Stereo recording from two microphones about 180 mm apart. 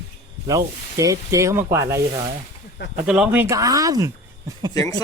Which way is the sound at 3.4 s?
20° right (ahead or behind).